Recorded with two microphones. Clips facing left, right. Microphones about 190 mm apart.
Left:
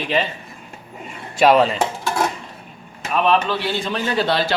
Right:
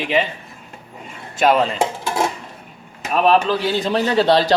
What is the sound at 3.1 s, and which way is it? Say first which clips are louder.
A man's voice: right 3 dB; 40° right (ahead or behind).